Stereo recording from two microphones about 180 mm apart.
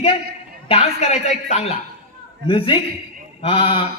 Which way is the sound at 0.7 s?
35° left (ahead or behind).